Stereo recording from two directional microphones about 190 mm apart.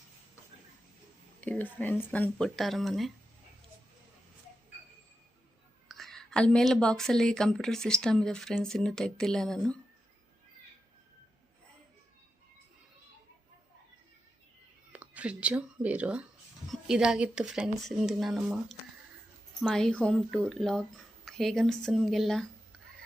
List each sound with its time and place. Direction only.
1.4 s speech: 10° left (ahead or behind)
5.9 s a woman's voice: centre (ahead or behind)
14.9 s a woman's voice: 5° right (ahead or behind)